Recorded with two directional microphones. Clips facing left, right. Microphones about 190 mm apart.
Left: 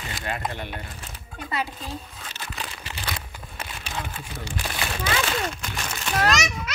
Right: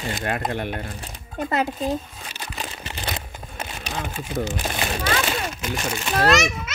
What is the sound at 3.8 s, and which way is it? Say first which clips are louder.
Sewing machine: right 3 dB; 45° right (ahead or behind).